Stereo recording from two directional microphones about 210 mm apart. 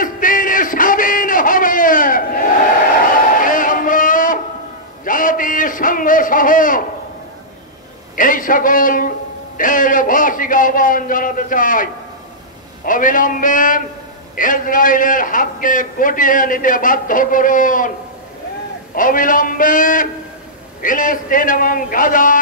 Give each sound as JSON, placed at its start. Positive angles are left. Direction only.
{"t": 0.0, "sound": "a sound", "side_deg": 40}
{"t": 8.2, "sound": "a man's voice", "side_deg": 40}
{"t": 18.9, "sound": "a man's voice", "side_deg": 40}